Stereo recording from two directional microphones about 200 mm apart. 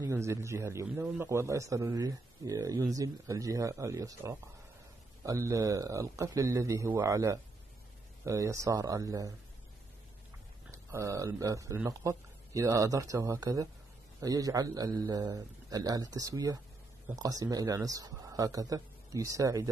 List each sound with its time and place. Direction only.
0.0 s a man's voice: 15° right (ahead or behind)
10.7 s a man's voice: 15° right (ahead or behind)